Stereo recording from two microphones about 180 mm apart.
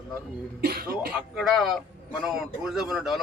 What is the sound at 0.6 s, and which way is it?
Speech, 60° right (ahead or behind).